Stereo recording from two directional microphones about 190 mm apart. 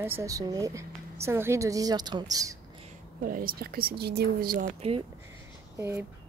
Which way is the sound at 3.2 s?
45° right (ahead or behind).